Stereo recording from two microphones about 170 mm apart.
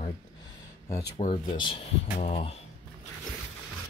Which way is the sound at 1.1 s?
35° left (ahead or behind).